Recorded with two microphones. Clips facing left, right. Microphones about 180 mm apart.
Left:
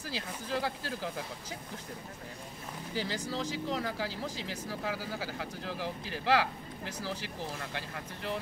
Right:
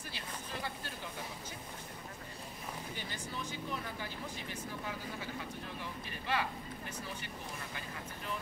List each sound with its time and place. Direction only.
0.1 s speech: 90° left
2.9 s speech: 90° left